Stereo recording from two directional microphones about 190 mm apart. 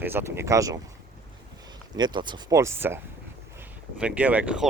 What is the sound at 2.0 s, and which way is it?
Speech, 25° right (ahead or behind).